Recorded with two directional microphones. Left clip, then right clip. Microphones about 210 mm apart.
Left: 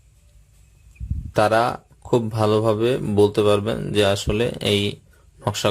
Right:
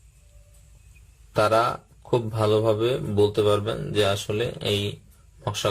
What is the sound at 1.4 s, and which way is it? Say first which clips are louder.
Speech: left 3 dB; 25° left (ahead or behind).